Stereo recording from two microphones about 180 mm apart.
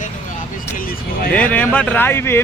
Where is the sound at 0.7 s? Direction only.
50° left (ahead or behind).